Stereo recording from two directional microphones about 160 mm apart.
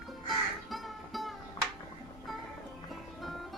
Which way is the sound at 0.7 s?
Centre (ahead or behind).